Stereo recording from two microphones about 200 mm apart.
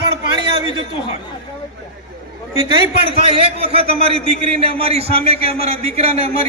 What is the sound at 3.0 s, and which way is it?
A man's voice, 25° right (ahead or behind).